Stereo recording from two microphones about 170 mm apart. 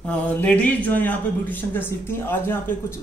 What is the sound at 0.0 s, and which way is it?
A man's voice, 10° left (ahead or behind).